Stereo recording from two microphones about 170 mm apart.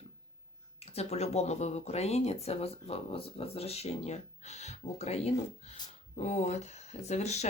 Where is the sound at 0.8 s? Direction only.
40° left (ahead or behind).